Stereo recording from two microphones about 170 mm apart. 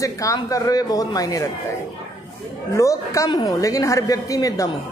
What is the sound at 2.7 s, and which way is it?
A woman's voice, 20° left (ahead or behind).